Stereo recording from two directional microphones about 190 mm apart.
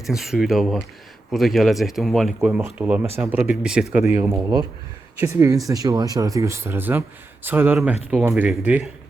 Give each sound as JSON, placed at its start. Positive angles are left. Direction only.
{"t": 0.1, "sound": "speech", "side_deg": 0}